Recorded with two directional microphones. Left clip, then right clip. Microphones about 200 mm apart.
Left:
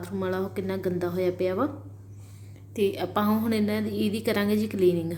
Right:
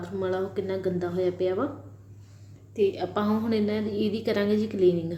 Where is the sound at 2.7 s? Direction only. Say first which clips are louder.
Even; 25° left (ahead or behind).